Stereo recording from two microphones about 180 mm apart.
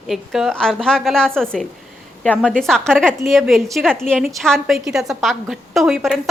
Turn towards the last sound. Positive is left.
turn(degrees=0)  # may be behind; listen again after turning